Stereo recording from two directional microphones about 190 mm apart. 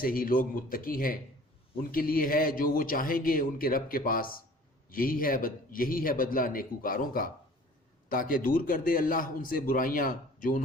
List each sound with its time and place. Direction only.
0.0 s a man's voice: 50° left (ahead or behind)